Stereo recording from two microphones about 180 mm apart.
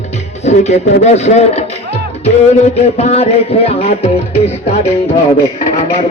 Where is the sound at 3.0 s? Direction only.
35° left (ahead or behind).